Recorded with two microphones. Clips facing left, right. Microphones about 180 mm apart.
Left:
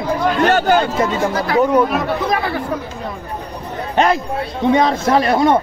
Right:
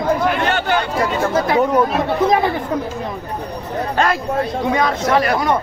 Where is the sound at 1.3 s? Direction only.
25° right (ahead or behind).